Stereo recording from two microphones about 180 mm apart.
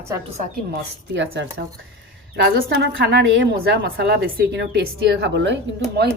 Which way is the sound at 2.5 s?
65° right (ahead or behind).